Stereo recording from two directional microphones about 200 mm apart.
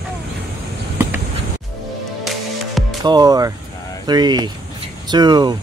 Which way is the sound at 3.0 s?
20° right (ahead or behind).